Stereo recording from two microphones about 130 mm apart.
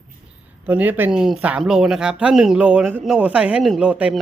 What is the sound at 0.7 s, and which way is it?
Speech, 15° right (ahead or behind).